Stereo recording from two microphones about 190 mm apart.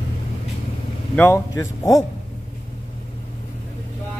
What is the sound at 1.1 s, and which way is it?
Speech, 10° left (ahead or behind).